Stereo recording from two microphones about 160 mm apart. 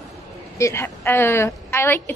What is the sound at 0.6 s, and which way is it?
A woman's voice, 15° left (ahead or behind).